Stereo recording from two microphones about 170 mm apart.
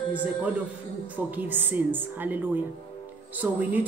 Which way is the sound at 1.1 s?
10° right (ahead or behind).